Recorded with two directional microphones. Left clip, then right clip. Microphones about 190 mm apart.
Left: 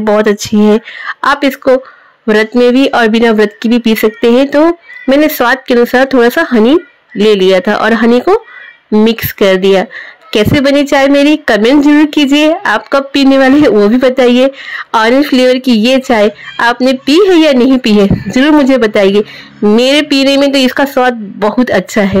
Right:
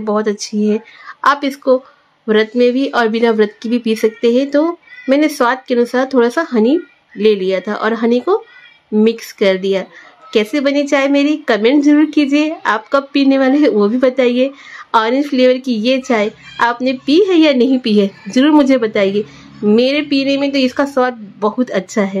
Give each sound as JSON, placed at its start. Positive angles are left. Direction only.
{"t": 0.0, "sound": "speech", "side_deg": 30}